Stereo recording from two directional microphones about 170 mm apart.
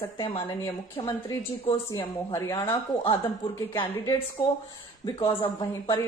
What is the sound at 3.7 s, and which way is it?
Speech, 15° left (ahead or behind).